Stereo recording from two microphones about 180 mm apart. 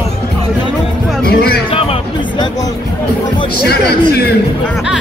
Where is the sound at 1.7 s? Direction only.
30° left (ahead or behind).